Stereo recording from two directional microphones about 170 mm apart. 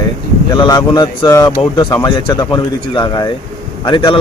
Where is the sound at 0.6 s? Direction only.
25° left (ahead or behind).